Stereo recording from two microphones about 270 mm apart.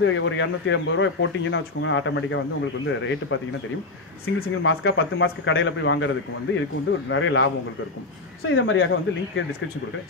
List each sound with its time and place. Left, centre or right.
0.0 s speech: left
4.4 s speech: left
8.5 s speech: left